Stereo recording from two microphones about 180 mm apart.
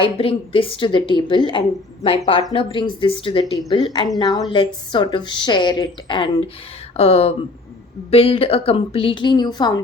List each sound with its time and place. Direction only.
0.0 s a woman's voice: 30° left (ahead or behind)